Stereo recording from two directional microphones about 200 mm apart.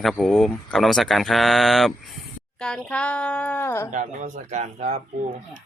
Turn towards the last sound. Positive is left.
turn(degrees=-35)  # may be behind; listen again after turning